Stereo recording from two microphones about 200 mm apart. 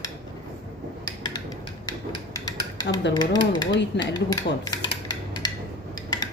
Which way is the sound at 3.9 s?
60° left (ahead or behind).